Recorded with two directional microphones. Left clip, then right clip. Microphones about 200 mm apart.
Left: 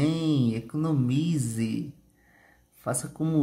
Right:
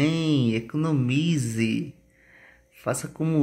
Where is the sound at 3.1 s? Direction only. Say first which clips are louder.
Right 2 dB; centre (ahead or behind).